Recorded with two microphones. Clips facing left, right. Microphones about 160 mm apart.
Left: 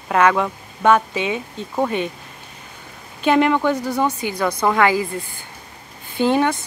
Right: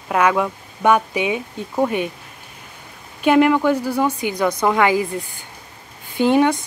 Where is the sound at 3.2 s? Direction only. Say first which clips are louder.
Right 2 dB; 5° right (ahead or behind).